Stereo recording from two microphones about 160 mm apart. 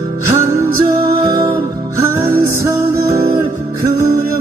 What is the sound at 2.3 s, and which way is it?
Music, 15° right (ahead or behind).